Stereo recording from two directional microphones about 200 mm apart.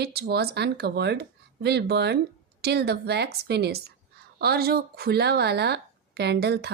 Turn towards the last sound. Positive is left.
turn(degrees=-55)  # may be behind; listen again after turning